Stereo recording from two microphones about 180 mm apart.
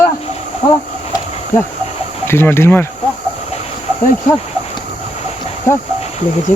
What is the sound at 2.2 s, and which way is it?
Speech, 10° left (ahead or behind).